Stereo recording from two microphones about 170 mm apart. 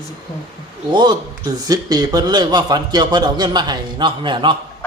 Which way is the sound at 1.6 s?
25° right (ahead or behind).